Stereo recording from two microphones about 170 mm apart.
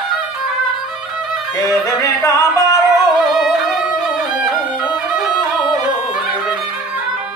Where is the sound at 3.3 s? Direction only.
Centre (ahead or behind).